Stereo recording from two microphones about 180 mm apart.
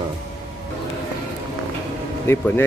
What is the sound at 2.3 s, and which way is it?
Speech, 10° left (ahead or behind).